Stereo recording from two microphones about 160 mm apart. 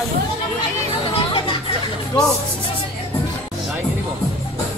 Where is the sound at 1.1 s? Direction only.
35° left (ahead or behind).